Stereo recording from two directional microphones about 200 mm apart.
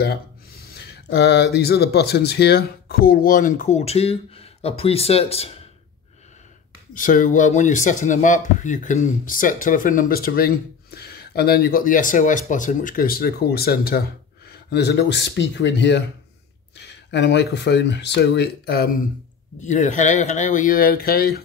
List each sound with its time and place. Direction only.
0.0 s speech: 50° left (ahead or behind); by 5.6 s 30° left (ahead or behind)
6.9 s speech: 40° left (ahead or behind)
19.6 s speech: 40° left (ahead or behind)